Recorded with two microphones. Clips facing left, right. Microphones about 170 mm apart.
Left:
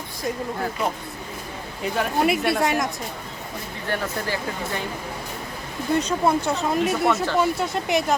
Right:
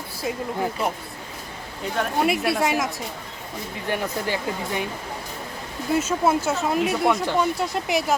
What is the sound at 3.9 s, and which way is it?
Speech, 15° right (ahead or behind).